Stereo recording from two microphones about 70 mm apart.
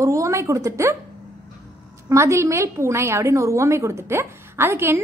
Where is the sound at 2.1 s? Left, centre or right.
Right.